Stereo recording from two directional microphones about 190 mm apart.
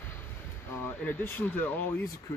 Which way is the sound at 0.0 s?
10° left (ahead or behind).